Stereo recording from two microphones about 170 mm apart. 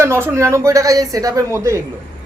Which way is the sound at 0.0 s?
15° right (ahead or behind).